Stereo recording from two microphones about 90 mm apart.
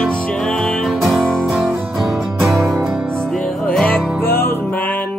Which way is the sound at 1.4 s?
5° right (ahead or behind).